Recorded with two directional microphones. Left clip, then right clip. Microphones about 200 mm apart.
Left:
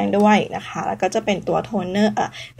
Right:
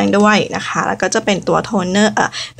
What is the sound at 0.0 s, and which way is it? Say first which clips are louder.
A woman's voice: right 4 dB; 25° right (ahead or behind).